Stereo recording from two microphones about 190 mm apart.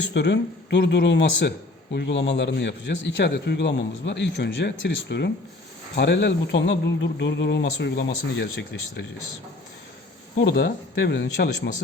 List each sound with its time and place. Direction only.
0.1 s speech: 65° left (ahead or behind)
10.4 s speech: 60° left (ahead or behind)